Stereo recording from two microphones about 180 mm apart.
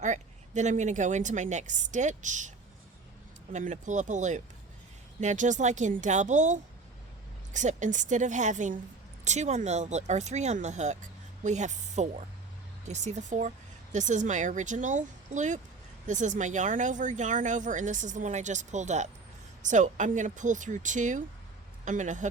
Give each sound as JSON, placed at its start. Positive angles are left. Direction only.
{"t": 0.0, "sound": "speech", "side_deg": -40}
{"t": 3.5, "sound": "speech", "side_deg": -45}